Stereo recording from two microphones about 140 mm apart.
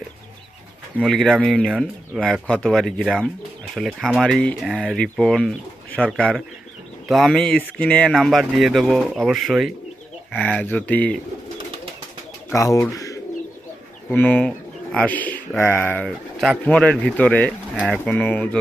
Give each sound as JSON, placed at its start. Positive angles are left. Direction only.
{"t": 0.9, "sound": "speech", "side_deg": 0}
{"t": 10.4, "sound": "speech", "side_deg": 10}
{"t": 12.5, "sound": "speech", "side_deg": 20}
{"t": 14.1, "sound": "speech", "side_deg": 10}
{"t": 16.0, "sound": "speech", "side_deg": 0}